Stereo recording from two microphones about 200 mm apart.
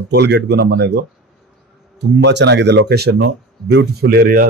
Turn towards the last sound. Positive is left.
turn(degrees=-50)  # may be behind; listen again after turning